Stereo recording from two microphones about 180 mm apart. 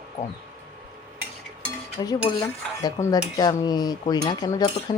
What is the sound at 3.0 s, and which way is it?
Speech, 15° left (ahead or behind).